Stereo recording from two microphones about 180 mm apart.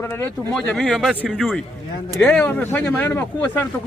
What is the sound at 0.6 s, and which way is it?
Speech, centre (ahead or behind).